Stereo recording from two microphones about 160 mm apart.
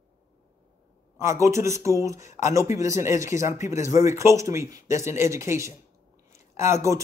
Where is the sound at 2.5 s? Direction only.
20° right (ahead or behind).